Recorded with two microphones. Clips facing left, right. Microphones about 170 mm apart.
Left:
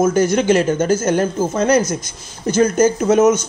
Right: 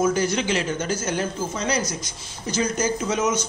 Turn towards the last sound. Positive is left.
turn(degrees=50)  # may be behind; listen again after turning